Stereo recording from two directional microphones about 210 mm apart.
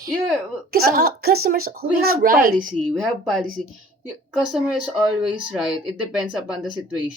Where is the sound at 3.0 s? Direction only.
Centre (ahead or behind).